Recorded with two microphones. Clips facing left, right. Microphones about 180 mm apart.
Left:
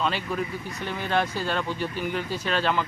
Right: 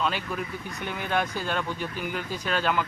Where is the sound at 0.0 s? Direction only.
Centre (ahead or behind).